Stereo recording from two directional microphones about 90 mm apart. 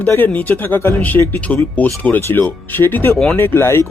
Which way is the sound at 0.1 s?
20° left (ahead or behind).